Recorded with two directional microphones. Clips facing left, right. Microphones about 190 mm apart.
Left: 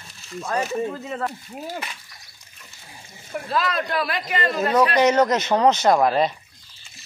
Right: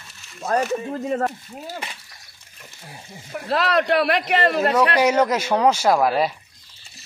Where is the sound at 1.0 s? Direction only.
45° right (ahead or behind).